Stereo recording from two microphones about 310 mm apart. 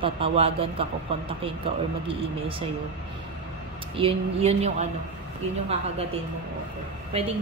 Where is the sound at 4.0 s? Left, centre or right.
Centre.